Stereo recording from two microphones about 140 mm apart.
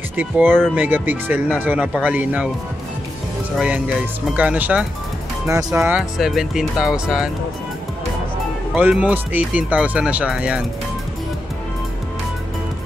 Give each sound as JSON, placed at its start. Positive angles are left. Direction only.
{"t": 0.1, "sound": "speech", "side_deg": -15}
{"t": 3.5, "sound": "speech", "side_deg": -5}
{"t": 5.5, "sound": "speech", "side_deg": -25}
{"t": 5.9, "sound": "speech", "side_deg": -5}
{"t": 8.7, "sound": "speech", "side_deg": -10}